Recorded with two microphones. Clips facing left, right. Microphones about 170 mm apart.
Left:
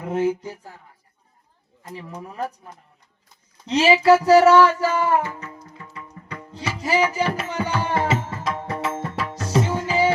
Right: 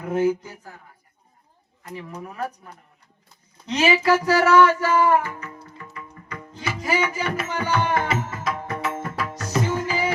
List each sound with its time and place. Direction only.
0.0 s music: 30° left (ahead or behind)
1.9 s music: 30° left (ahead or behind)
3.7 s music: 30° left (ahead or behind)